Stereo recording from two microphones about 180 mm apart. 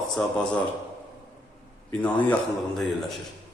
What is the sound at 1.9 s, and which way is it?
Speech, 10° left (ahead or behind).